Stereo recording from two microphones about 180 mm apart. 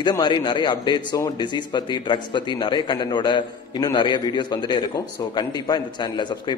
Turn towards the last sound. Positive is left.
turn(degrees=25)  # may be behind; listen again after turning